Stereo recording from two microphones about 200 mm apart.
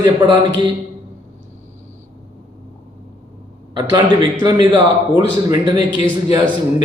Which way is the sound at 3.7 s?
20° right (ahead or behind).